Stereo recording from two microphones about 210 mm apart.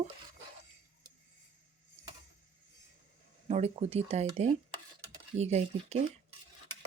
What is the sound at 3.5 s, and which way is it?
Speech, 30° right (ahead or behind).